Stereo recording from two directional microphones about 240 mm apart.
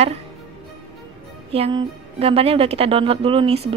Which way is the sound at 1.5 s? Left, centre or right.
Right.